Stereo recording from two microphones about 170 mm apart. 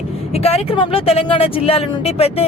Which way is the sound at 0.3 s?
35° left (ahead or behind).